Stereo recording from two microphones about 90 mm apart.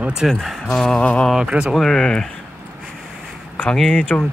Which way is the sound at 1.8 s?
5° left (ahead or behind).